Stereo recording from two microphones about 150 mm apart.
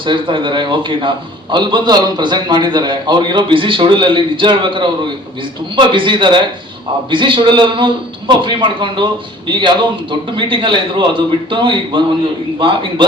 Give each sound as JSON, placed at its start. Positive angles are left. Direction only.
{"t": 0.0, "sound": "a man's voice", "side_deg": -35}